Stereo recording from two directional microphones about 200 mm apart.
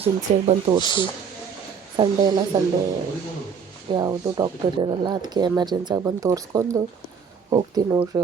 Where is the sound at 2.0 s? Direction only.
20° right (ahead or behind).